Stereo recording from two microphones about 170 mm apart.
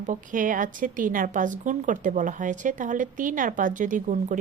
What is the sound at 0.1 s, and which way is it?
Speech, 50° right (ahead or behind).